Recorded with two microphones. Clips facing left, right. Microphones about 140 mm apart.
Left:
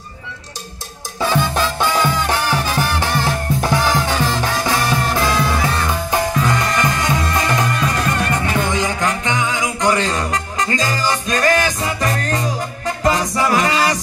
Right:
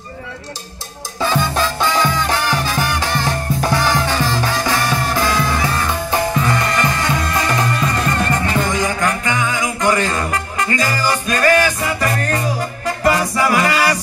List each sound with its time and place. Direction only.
1.2 s music: centre (ahead or behind)
7.2 s music: centre (ahead or behind)
8.1 s music: 10° left (ahead or behind)